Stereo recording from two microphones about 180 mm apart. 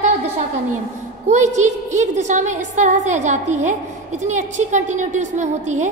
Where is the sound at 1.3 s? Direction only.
40° right (ahead or behind).